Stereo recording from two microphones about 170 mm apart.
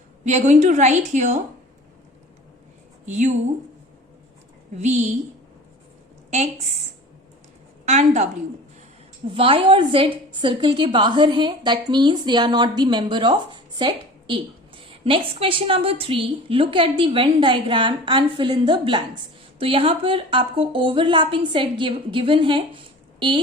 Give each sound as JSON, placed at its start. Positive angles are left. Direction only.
{"t": 0.3, "sound": "a woman's voice", "side_deg": -45}
{"t": 3.1, "sound": "a woman's voice", "side_deg": -45}
{"t": 4.8, "sound": "speech", "side_deg": -40}
{"t": 6.3, "sound": "speech", "side_deg": -40}
{"t": 7.9, "sound": "speech", "side_deg": -40}
{"t": 9.2, "sound": "a woman's voice", "side_deg": -30}